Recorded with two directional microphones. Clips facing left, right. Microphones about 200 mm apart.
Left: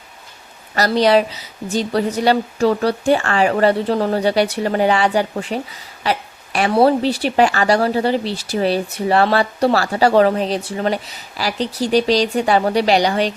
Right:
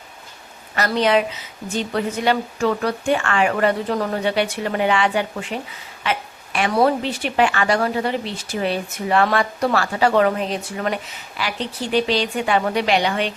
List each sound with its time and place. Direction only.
0.8 s a woman's voice: 35° left (ahead or behind)